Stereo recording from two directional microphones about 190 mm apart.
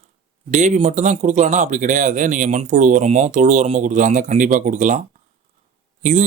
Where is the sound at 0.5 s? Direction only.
35° right (ahead or behind).